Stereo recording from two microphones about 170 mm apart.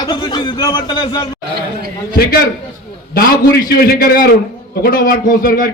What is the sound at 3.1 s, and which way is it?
A man's voice, 65° left (ahead or behind).